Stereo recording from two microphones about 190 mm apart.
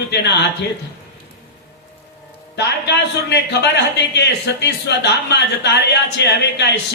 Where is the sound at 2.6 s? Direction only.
60° left (ahead or behind).